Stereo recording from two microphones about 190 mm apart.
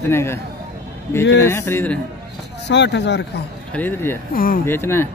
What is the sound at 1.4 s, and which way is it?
Speech, 15° left (ahead or behind).